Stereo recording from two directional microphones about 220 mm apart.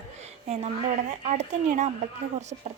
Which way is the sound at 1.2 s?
30° right (ahead or behind).